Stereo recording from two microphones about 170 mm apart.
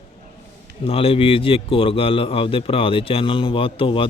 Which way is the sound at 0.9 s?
35° left (ahead or behind).